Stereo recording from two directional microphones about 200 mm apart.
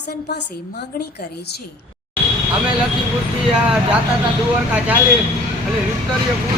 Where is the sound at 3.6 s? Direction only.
5° right (ahead or behind).